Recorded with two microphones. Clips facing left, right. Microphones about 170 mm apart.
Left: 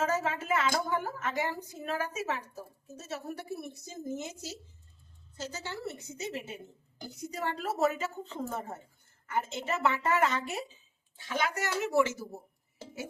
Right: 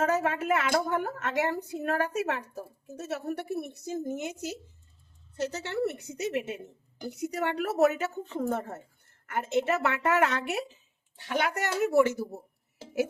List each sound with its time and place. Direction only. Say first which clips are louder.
0.0 s a woman's voice: right 4 dB; 60° right (ahead or behind)